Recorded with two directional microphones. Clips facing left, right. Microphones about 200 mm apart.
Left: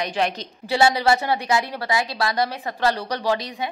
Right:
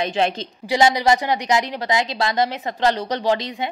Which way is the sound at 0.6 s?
15° right (ahead or behind).